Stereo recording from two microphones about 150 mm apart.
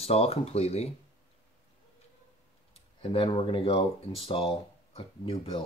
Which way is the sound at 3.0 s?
40° left (ahead or behind).